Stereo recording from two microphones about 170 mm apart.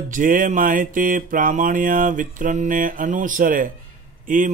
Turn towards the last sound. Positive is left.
turn(degrees=-50)  # may be behind; listen again after turning